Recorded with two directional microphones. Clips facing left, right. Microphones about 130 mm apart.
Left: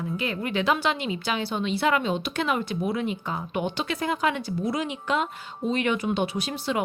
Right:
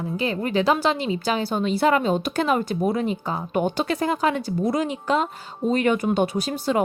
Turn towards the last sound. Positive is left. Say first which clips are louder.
# right 5 dB
turn(degrees=-40)  # may be behind; listen again after turning